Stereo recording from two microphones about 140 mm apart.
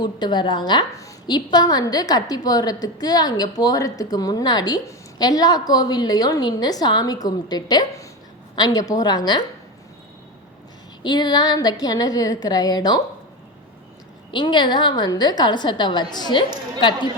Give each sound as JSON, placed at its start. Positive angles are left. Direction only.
{"t": 0.0, "sound": "a woman's voice", "side_deg": 30}
{"t": 11.0, "sound": "a woman's voice", "side_deg": 30}
{"t": 14.3, "sound": "a woman's voice", "side_deg": 35}